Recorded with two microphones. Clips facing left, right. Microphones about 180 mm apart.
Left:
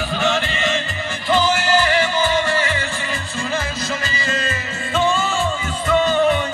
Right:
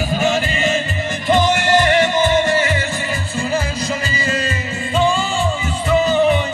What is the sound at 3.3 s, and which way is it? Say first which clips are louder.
Music: right 4 dB; 15° right (ahead or behind).